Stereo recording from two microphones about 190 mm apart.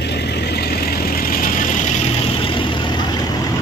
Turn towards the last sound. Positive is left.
turn(degrees=25)  # may be behind; listen again after turning